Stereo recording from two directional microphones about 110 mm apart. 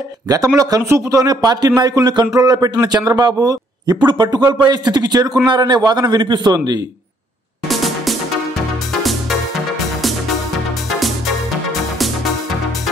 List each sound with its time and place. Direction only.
0.6 s speech: 35° right (ahead or behind)
7.6 s music: centre (ahead or behind)